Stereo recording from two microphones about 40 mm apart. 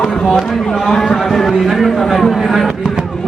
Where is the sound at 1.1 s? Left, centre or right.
Centre.